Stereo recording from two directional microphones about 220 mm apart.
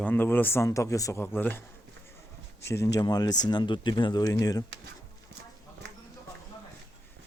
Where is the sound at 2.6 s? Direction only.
15° left (ahead or behind).